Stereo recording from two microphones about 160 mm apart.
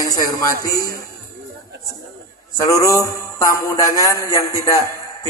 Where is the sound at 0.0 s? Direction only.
20° left (ahead or behind).